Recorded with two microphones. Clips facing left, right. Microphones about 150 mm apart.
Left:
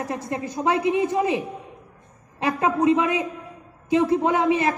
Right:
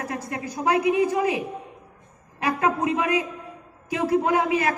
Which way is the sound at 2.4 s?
25° left (ahead or behind).